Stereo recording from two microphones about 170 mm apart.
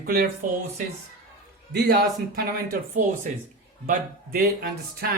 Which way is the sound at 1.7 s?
75° right (ahead or behind).